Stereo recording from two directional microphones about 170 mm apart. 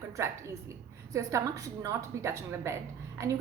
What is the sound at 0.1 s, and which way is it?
A woman's voice, 15° right (ahead or behind).